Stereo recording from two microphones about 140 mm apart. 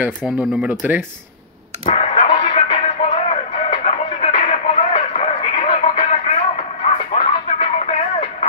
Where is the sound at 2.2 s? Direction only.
35° left (ahead or behind).